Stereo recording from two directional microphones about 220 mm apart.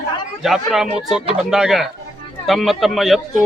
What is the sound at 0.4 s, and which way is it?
Speech, centre (ahead or behind).